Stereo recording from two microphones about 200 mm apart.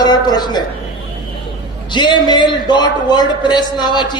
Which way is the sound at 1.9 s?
20° left (ahead or behind).